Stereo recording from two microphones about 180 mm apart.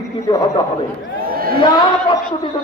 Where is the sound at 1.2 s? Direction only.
55° right (ahead or behind).